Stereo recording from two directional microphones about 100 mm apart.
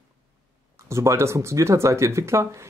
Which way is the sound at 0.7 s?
30° right (ahead or behind).